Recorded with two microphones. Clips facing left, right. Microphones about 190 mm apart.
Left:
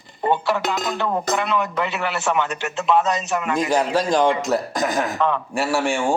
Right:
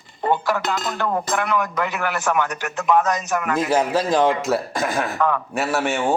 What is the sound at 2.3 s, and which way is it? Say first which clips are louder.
Speech: even; 10° left (ahead or behind).